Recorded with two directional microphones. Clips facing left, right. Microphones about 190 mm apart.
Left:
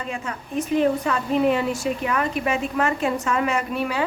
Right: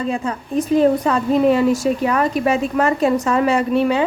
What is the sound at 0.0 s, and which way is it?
Speech, 35° right (ahead or behind).